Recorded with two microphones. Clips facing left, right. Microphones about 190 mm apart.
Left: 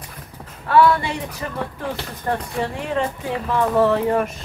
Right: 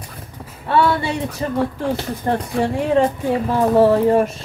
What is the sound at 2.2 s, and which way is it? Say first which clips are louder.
Speech: right 4 dB; 30° right (ahead or behind).